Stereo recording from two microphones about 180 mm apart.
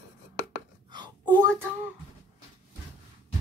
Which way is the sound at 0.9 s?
25° right (ahead or behind).